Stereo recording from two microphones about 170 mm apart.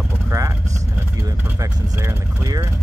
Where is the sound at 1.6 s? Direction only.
15° right (ahead or behind).